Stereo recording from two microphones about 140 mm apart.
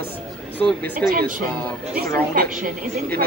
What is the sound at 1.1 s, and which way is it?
A woman's voice, 90° right.